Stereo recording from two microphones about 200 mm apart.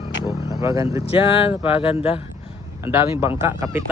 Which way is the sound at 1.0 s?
25° left (ahead or behind).